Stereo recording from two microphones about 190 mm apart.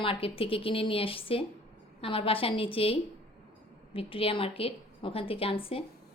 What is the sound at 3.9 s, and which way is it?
A woman's voice, 30° left (ahead or behind).